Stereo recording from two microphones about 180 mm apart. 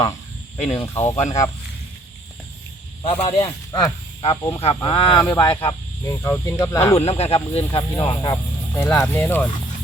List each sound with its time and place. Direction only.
0.5 s speech: 35° left (ahead or behind)
0.9 s speech: 15° left (ahead or behind)
3.1 s speech: 30° left (ahead or behind)
7.0 s speech: 35° left (ahead or behind)
8.7 s speech: 10° left (ahead or behind)